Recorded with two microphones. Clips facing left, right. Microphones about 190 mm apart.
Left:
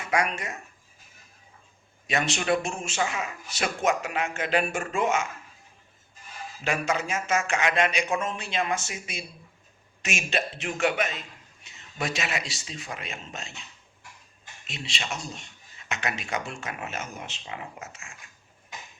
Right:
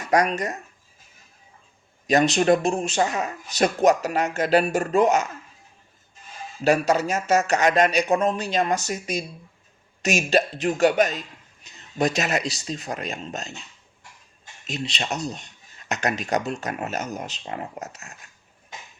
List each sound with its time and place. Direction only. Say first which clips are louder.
0.0 s speech: right 6 dB; 40° right (ahead or behind)
2.0 s speech: right 8 dB; 35° right (ahead or behind)
6.7 s speech: right 8 dB; 40° right (ahead or behind)
14.7 s speech: right 7 dB; 40° right (ahead or behind)